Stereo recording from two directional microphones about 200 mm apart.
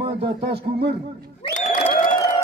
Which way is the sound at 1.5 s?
35° left (ahead or behind).